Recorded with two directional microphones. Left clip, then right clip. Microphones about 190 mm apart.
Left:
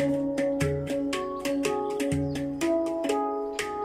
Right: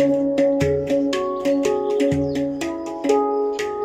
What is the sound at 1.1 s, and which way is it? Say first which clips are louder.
Music: right 9 dB; 25° right (ahead or behind).